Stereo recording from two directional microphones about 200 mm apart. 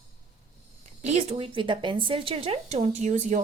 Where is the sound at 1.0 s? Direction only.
35° right (ahead or behind).